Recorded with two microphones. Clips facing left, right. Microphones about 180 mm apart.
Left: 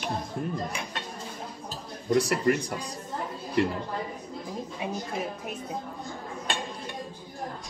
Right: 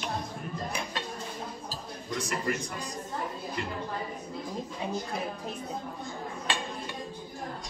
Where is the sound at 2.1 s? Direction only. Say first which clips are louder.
Left 9 dB; 45° left (ahead or behind).